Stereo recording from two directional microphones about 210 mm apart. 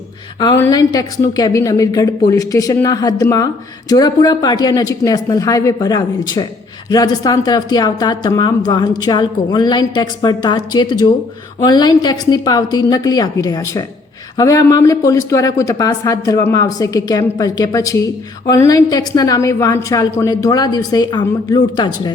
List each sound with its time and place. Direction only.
0.6 s a woman's voice: 15° left (ahead or behind)